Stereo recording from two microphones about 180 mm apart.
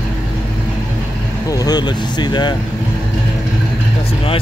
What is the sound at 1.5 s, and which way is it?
Speech, 20° left (ahead or behind).